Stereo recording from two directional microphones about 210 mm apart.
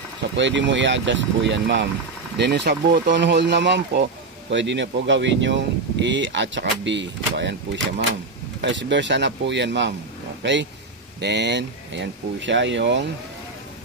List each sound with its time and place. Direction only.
0.4 s speech: 60° right (ahead or behind)